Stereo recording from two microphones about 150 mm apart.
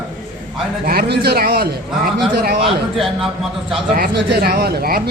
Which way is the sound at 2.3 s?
75° right (ahead or behind).